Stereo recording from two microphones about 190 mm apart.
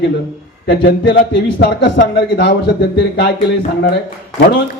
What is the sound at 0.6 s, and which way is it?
Speech, 65° left (ahead or behind).